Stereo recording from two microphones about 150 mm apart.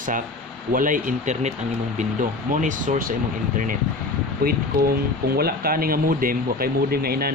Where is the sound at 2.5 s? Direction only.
60° right (ahead or behind).